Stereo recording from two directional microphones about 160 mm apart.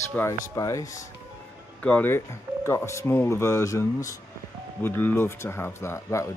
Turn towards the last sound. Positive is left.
turn(degrees=20)  # may be behind; listen again after turning